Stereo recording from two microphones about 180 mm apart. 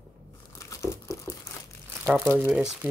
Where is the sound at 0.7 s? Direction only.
15° left (ahead or behind).